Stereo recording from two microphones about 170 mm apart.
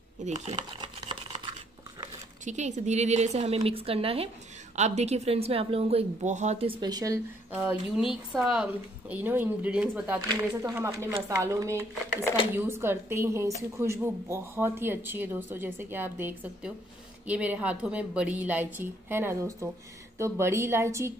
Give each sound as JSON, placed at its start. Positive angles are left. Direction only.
{"t": 0.2, "sound": "a woman's voice", "side_deg": -40}
{"t": 0.7, "sound": "computer keyboard", "side_deg": -30}
{"t": 2.4, "sound": "a woman's voice", "side_deg": -45}
{"t": 7.5, "sound": "speech", "side_deg": -5}
{"t": 10.2, "sound": "speech", "side_deg": -20}